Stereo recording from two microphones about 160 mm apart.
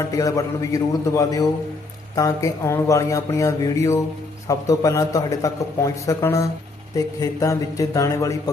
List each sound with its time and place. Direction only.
0.1 s a man's voice: 20° left (ahead or behind)